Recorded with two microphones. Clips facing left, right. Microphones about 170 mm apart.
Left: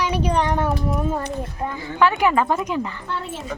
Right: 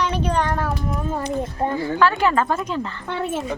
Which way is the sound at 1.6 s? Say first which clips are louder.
Right 5 dB; 35° right (ahead or behind).